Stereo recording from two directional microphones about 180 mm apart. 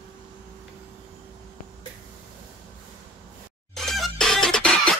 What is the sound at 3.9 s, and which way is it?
Music, centre (ahead or behind).